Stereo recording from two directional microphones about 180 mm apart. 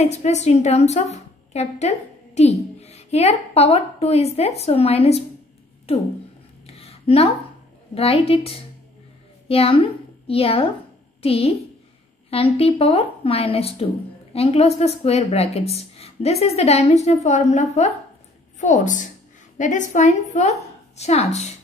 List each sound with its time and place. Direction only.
0.0 s a woman's voice: 40° left (ahead or behind)
6.6 s a sound: 35° left (ahead or behind)
7.9 s a woman's voice: 35° left (ahead or behind)